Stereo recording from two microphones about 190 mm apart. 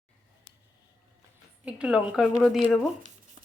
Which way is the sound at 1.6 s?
5° right (ahead or behind).